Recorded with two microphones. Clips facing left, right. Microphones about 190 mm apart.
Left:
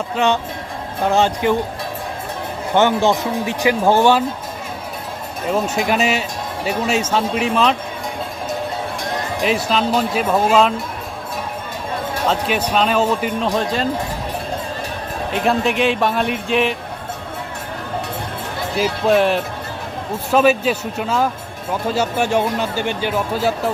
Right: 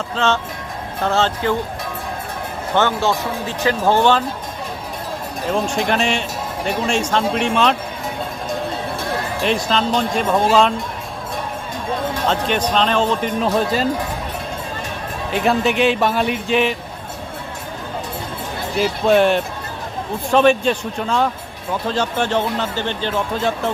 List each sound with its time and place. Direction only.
0.2 s speech: 15° left (ahead or behind)
2.7 s speech: 15° left (ahead or behind)
5.5 s a man's voice: 5° left (ahead or behind)
9.4 s a man's voice: 5° left (ahead or behind)
12.1 s speech: 5° left (ahead or behind)
15.3 s a man's voice: centre (ahead or behind)
18.8 s a man's voice: centre (ahead or behind)